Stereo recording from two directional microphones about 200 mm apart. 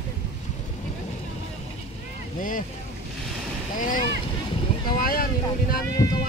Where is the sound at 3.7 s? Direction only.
40° left (ahead or behind).